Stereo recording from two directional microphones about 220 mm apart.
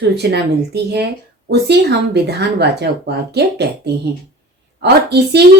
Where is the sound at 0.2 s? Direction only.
50° right (ahead or behind).